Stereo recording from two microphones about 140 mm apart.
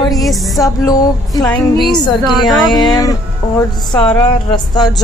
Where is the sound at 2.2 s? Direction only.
Centre (ahead or behind).